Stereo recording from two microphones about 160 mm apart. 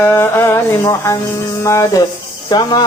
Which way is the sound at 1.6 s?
20° left (ahead or behind).